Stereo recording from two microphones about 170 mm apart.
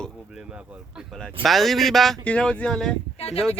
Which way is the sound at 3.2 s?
35° left (ahead or behind).